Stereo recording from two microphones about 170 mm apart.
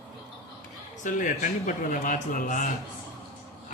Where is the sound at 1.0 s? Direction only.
50° left (ahead or behind).